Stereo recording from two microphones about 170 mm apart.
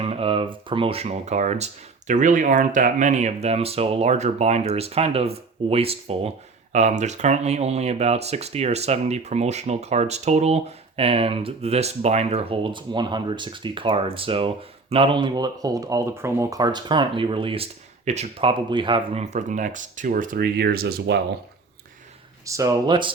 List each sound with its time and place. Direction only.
0.0 s speech: 35° right (ahead or behind); by 21.2 s 75° right (ahead or behind)
22.4 s speech: 20° right (ahead or behind)